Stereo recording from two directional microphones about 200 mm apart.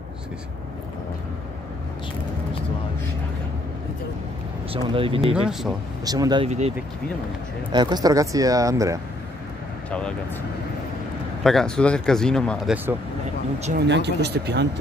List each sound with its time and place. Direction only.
4.7 s speech: 25° right (ahead or behind)
5.3 s speech: 5° right (ahead or behind)
6.0 s speech: 20° right (ahead or behind)
6.4 s speech: 35° right (ahead or behind)
7.7 s speech: 20° right (ahead or behind)
9.8 s speech: 5° left (ahead or behind)
11.4 s speech: 5° left (ahead or behind)
13.7 s speech: 60° right (ahead or behind)